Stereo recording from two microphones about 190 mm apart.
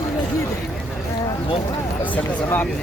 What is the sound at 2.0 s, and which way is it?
Speech, 10° left (ahead or behind).